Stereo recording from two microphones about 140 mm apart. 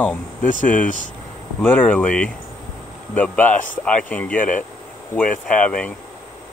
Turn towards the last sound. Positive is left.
turn(degrees=10)  # may be behind; listen again after turning